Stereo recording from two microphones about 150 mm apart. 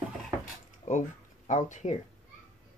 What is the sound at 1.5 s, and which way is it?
Speech, 55° left (ahead or behind).